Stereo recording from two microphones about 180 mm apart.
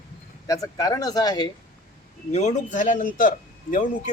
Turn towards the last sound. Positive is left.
turn(degrees=50)  # may be behind; listen again after turning